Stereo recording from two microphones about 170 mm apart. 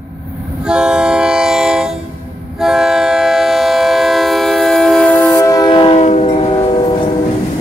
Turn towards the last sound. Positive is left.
turn(degrees=40)  # may be behind; listen again after turning